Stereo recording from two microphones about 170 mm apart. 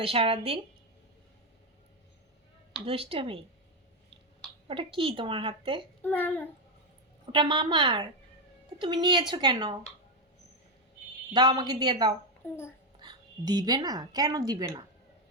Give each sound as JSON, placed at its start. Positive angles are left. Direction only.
{"t": 0.0, "sound": "a woman's voice", "side_deg": -35}
{"t": 2.8, "sound": "a woman's voice", "side_deg": -35}
{"t": 4.7, "sound": "a woman's voice", "side_deg": -30}
{"t": 6.0, "sound": "a child's voice", "side_deg": 10}
{"t": 7.3, "sound": "speech", "side_deg": -30}
{"t": 11.3, "sound": "speech", "side_deg": -25}
{"t": 12.4, "sound": "a child's voice", "side_deg": 10}
{"t": 13.0, "sound": "a woman's voice", "side_deg": -25}